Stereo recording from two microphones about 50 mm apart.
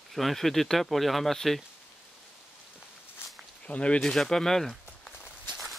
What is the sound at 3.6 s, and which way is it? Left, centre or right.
Speech, left.